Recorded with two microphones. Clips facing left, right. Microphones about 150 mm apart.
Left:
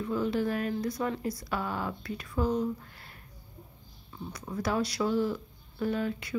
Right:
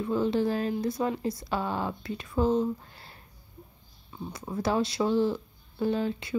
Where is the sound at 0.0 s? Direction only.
25° right (ahead or behind).